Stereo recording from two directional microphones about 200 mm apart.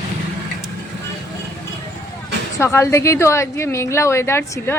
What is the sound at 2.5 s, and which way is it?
Speech, 15° left (ahead or behind).